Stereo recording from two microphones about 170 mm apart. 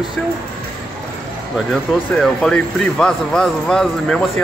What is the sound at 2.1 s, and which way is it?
Speech, 5° left (ahead or behind).